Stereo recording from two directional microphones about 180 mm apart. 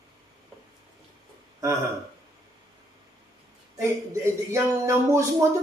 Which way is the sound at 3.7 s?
15° right (ahead or behind).